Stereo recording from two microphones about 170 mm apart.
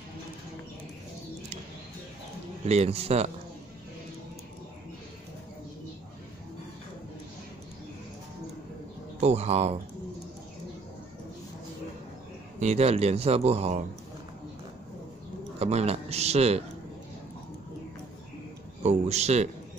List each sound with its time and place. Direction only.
2.6 s speech: 40° right (ahead or behind)
9.2 s speech: 40° right (ahead or behind)
12.5 s speech: 40° right (ahead or behind)
15.6 s speech: 35° right (ahead or behind)
18.8 s speech: 40° right (ahead or behind)